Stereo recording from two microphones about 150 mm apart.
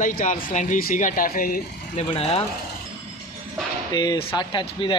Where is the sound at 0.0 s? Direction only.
60° left (ahead or behind).